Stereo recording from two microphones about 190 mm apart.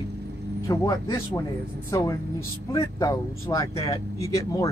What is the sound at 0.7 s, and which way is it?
A man's voice, 20° left (ahead or behind).